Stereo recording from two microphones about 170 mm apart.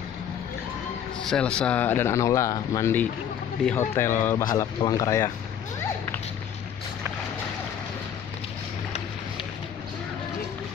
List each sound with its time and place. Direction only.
1.3 s speech: 5° left (ahead or behind)